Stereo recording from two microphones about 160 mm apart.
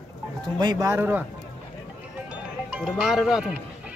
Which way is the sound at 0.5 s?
25° right (ahead or behind).